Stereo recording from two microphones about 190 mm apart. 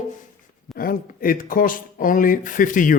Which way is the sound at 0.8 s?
50° left (ahead or behind).